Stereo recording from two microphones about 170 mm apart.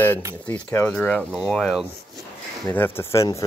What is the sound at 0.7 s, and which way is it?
Speech, 10° left (ahead or behind).